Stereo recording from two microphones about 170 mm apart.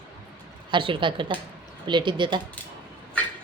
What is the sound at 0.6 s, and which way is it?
A woman's voice, 30° right (ahead or behind).